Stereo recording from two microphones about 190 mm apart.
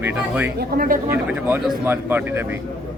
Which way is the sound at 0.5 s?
50° right (ahead or behind).